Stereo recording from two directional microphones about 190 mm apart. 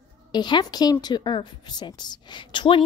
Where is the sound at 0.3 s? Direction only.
20° left (ahead or behind).